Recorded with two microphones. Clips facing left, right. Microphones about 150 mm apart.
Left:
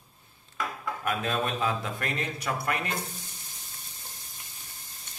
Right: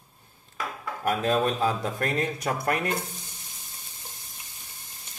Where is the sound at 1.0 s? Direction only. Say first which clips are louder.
Right 6 dB; 35° right (ahead or behind).